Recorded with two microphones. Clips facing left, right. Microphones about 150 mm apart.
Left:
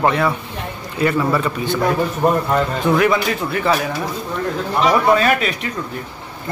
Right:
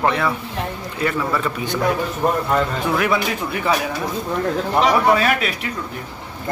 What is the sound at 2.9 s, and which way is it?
Speech, 10° right (ahead or behind).